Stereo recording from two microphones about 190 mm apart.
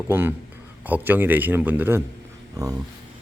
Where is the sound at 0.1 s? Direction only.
10° right (ahead or behind).